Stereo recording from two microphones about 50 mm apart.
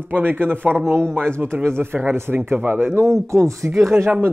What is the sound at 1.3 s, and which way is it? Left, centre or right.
Speech, right.